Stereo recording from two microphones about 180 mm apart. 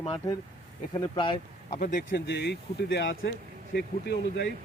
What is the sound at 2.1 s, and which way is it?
Speech, 70° left (ahead or behind).